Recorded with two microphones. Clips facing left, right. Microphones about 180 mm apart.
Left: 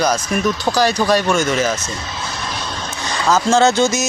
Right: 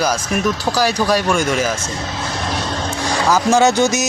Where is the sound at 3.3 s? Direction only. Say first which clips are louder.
Even; 15° right (ahead or behind).